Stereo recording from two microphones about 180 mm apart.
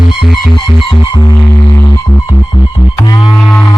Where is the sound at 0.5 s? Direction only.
25° left (ahead or behind).